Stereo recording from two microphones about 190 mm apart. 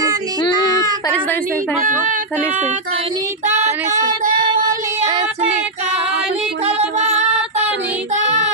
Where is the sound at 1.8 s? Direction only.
45° right (ahead or behind).